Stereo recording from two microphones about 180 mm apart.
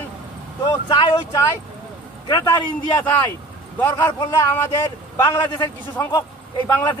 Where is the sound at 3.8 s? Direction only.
15° left (ahead or behind).